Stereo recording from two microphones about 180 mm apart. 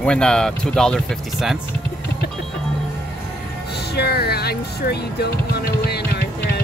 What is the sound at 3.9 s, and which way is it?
Speech, 65° left (ahead or behind).